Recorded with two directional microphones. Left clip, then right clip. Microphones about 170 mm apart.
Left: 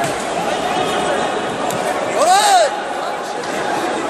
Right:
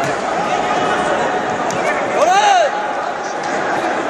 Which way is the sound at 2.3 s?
35° left (ahead or behind).